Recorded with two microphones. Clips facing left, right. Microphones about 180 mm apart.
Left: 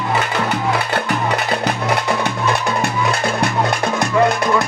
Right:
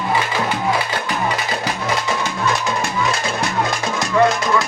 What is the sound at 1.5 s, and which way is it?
Music, 60° left (ahead or behind).